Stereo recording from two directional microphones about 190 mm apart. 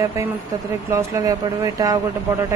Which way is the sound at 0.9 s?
15° right (ahead or behind).